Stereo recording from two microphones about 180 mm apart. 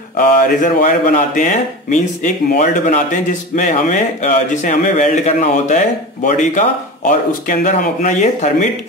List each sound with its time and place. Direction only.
0.4 s speech: 45° left (ahead or behind)